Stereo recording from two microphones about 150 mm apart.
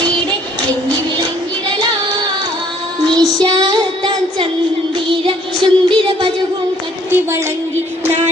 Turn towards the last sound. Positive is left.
turn(degrees=-15)  # may be behind; listen again after turning